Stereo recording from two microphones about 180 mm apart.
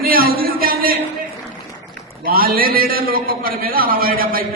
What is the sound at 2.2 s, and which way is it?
A man's voice, 55° right (ahead or behind).